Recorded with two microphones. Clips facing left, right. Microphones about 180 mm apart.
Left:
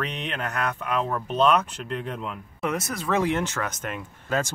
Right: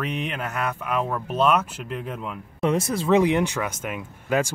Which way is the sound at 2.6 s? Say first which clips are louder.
Right 6 dB; 30° right (ahead or behind).